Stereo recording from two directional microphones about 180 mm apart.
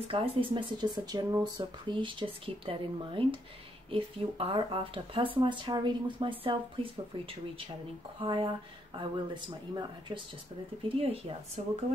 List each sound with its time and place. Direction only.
0.1 s speech: 30° right (ahead or behind)